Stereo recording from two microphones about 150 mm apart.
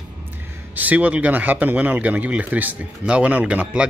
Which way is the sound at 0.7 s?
10° right (ahead or behind).